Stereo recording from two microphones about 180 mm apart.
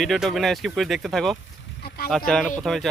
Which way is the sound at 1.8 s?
60° left (ahead or behind).